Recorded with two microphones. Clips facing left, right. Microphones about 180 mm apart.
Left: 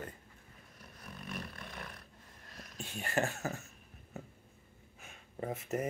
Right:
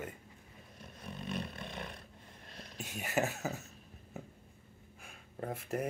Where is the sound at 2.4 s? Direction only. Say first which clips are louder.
Right 1 dB; 25° right (ahead or behind).